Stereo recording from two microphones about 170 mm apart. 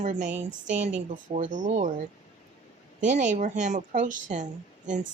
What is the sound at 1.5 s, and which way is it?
Speech, 50° right (ahead or behind).